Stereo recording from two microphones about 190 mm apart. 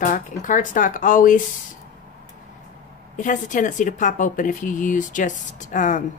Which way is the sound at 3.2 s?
40° left (ahead or behind).